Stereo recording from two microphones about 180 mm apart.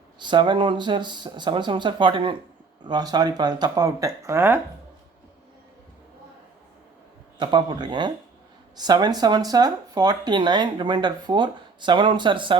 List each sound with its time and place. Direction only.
0.2 s speech: 25° right (ahead or behind)
7.3 s speech: 25° right (ahead or behind)